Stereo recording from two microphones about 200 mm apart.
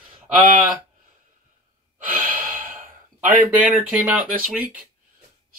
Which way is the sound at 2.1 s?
40° right (ahead or behind).